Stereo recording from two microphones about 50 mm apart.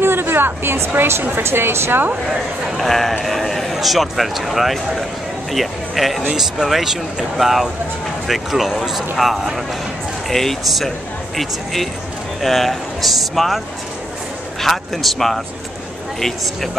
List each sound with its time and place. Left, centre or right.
0.0 s speech: right
2.8 s a man's voice: centre
10.3 s a man's voice: centre
14.6 s a man's voice: centre